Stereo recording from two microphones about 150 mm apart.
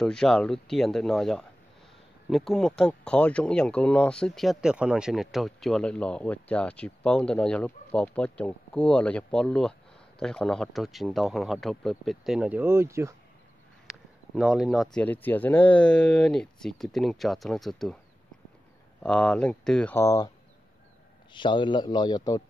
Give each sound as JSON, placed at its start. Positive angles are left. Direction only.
{"t": 0.0, "sound": "speech", "side_deg": 5}
{"t": 13.8, "sound": "speech", "side_deg": 0}
{"t": 19.0, "sound": "speech", "side_deg": 5}
{"t": 20.0, "sound": "speech", "side_deg": 20}
{"t": 21.3, "sound": "a man's voice", "side_deg": 30}